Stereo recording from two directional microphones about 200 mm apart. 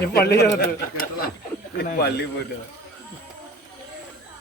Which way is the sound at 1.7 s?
55° left (ahead or behind).